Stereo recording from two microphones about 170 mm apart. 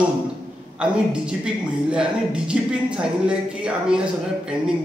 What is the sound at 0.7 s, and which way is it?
Speech, 5° right (ahead or behind).